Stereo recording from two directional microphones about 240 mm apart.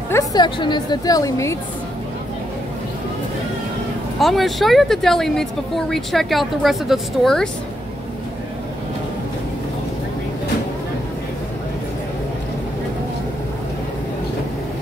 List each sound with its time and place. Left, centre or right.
0.1 s a woman's voice: centre
4.2 s speech: centre